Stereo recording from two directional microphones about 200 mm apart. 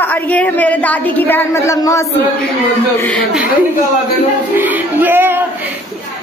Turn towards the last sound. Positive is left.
turn(degrees=-10)  # may be behind; listen again after turning